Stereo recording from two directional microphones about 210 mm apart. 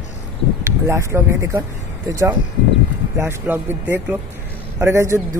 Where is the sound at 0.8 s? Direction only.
15° right (ahead or behind).